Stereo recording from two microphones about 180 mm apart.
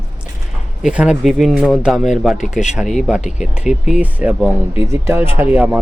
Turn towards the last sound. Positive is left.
turn(degrees=-10)  # may be behind; listen again after turning